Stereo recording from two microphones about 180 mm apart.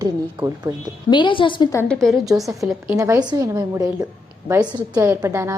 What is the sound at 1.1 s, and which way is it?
Speech, 25° left (ahead or behind).